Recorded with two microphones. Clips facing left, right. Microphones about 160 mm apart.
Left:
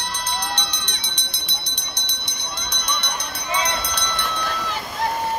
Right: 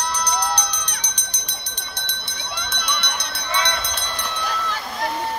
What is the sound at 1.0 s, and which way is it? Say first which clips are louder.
Jingle bell: left 1 dB; 40° right (ahead or behind).